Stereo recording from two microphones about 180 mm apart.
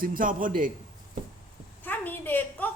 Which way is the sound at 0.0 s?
50° right (ahead or behind).